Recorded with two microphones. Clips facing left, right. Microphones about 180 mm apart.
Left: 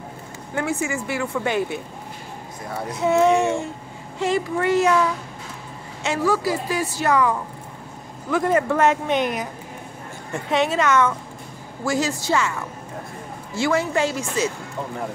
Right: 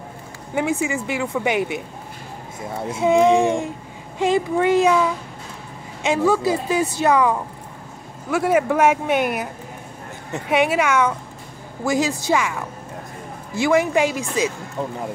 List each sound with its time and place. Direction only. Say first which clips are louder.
0.6 s speech: right 3 dB; 15° right (ahead or behind)
2.9 s speech: right 2 dB; 20° right (ahead or behind)
6.0 s a woman's voice: right 3 dB; 20° right (ahead or behind)